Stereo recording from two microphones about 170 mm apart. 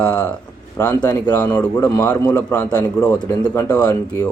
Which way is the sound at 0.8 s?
15° left (ahead or behind).